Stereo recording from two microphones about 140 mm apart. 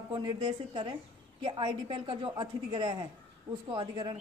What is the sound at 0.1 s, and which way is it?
A woman's voice, 35° right (ahead or behind).